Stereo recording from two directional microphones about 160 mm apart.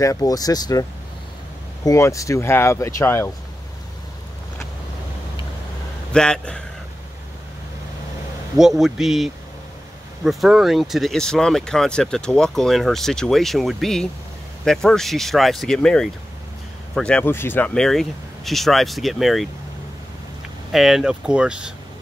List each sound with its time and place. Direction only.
0.0 s speech: 20° left (ahead or behind)
1.9 s speech: 20° left (ahead or behind)
6.1 s speech: 5° left (ahead or behind)
8.5 s speech: 5° right (ahead or behind)
20.7 s speech: centre (ahead or behind)